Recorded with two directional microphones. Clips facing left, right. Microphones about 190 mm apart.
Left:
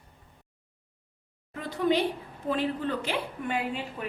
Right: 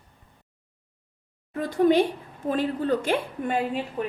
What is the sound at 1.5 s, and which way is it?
A woman's voice, 45° right (ahead or behind).